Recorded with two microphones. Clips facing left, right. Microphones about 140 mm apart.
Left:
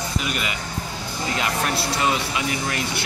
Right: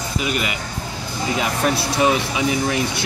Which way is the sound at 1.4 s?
15° right (ahead or behind).